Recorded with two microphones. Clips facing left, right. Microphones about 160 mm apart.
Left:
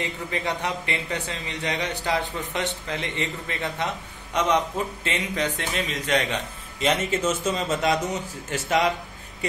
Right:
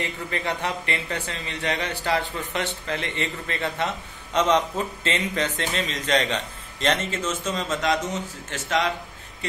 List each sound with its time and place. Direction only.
0.0 s a man's voice: 15° left (ahead or behind)